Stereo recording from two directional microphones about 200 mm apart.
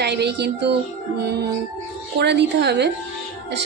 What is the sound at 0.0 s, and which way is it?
Speech, 55° right (ahead or behind).